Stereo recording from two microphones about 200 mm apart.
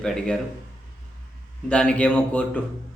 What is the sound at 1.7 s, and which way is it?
Speech, 5° left (ahead or behind).